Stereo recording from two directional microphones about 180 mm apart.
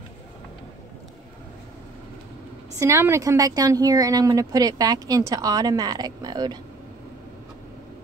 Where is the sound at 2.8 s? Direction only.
15° right (ahead or behind).